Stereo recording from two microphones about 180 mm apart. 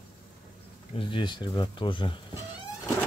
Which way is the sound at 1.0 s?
25° left (ahead or behind).